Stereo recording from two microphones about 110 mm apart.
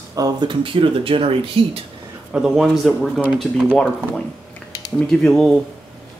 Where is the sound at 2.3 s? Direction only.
5° right (ahead or behind).